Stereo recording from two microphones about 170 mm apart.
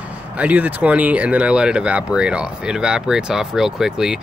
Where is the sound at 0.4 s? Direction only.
10° right (ahead or behind).